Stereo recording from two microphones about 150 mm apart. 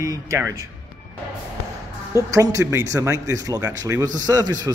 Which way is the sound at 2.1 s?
20° right (ahead or behind).